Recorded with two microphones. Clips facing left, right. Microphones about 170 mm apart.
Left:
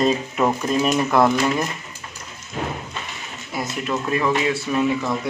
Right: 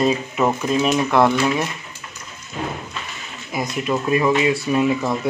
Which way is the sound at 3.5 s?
15° right (ahead or behind).